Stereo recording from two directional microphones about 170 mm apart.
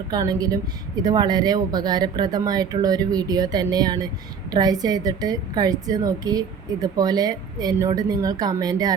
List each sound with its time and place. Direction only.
0.1 s speech: 20° right (ahead or behind)